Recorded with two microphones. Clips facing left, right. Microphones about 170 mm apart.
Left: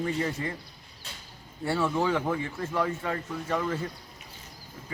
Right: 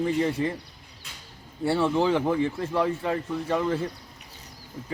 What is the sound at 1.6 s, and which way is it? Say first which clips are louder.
Speech: right 4 dB; 30° right (ahead or behind).